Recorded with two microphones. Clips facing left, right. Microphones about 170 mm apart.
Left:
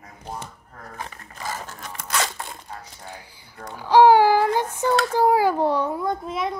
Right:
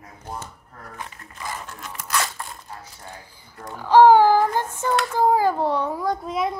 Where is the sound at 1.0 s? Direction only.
35° left (ahead or behind).